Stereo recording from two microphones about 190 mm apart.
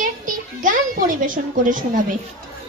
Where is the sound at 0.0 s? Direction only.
45° right (ahead or behind).